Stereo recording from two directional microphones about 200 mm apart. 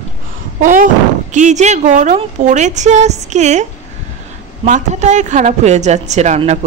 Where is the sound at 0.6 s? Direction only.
40° right (ahead or behind).